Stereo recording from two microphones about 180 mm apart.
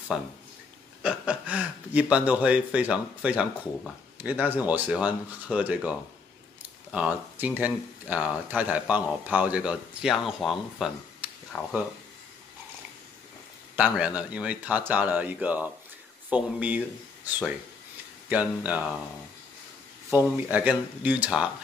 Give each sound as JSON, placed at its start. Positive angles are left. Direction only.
{"t": 0.1, "sound": "speech", "side_deg": -5}
{"t": 13.7, "sound": "speech", "side_deg": -5}
{"t": 20.1, "sound": "speech", "side_deg": -10}